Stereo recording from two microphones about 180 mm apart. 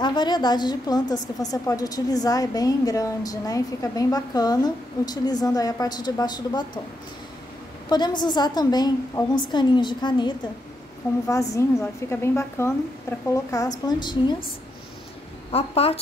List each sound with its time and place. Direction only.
0.0 s a woman's voice: 25° left (ahead or behind)
7.9 s a woman's voice: 25° left (ahead or behind)
15.5 s speech: 35° left (ahead or behind)